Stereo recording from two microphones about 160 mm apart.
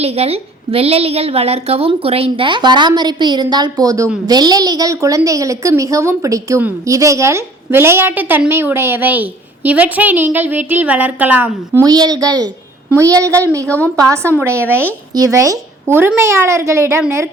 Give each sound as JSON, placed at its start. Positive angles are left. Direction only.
{"t": 0.0, "sound": "a woman's voice", "side_deg": -40}